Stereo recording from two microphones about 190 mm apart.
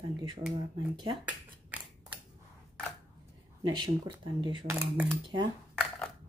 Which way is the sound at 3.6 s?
25° right (ahead or behind).